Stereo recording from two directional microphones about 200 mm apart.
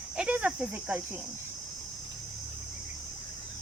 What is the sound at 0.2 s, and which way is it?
Speech, 5° right (ahead or behind).